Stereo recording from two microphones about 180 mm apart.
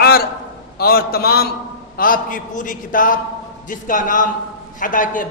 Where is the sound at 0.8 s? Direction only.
55° left (ahead or behind).